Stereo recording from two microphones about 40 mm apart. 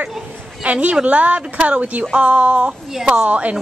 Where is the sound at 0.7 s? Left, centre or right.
Right.